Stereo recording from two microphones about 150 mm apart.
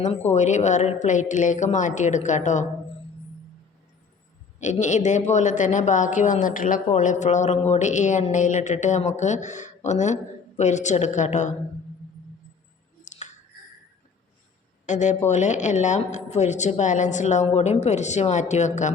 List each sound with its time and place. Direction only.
0.0 s speech: 50° left (ahead or behind)
4.6 s speech: 50° left (ahead or behind)
13.1 s a sound: 55° left (ahead or behind)
14.8 s speech: 55° left (ahead or behind)